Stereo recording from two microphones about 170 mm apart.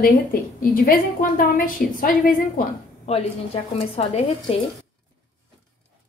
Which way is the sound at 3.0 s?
35° left (ahead or behind).